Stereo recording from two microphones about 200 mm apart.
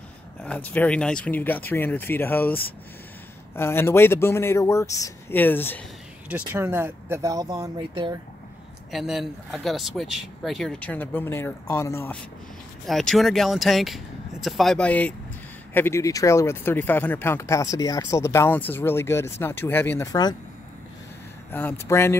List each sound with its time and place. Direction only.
0.4 s speech: 5° left (ahead or behind)
6.2 s speech: 10° right (ahead or behind)
8.9 s speech: centre (ahead or behind)
12.8 s speech: centre (ahead or behind); by 20.3 s 20° left (ahead or behind)
21.5 s speech: 10° left (ahead or behind)